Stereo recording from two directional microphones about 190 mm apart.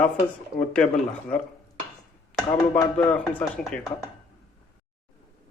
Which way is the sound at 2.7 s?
10° left (ahead or behind).